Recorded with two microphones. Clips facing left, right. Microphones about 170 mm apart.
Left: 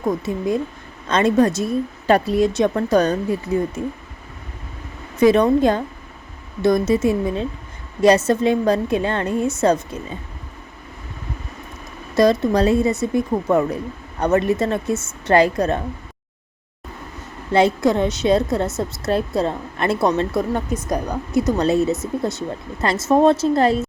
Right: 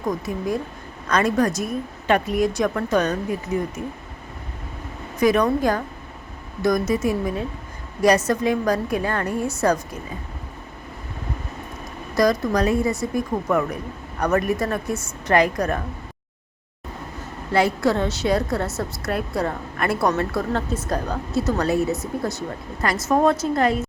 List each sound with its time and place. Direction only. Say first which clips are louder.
0.1 s a woman's voice: left 3 dB; 25° left (ahead or behind)
5.2 s a woman's voice: left 4 dB; 25° left (ahead or behind)
12.1 s a woman's voice: left 4 dB; 25° left (ahead or behind)
17.5 s a woman's voice: left 3 dB; 20° left (ahead or behind)